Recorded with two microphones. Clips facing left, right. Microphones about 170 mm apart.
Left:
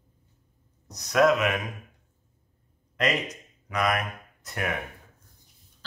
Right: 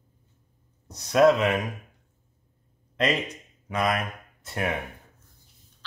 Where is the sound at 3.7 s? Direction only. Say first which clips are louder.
Right 1 dB; 25° right (ahead or behind).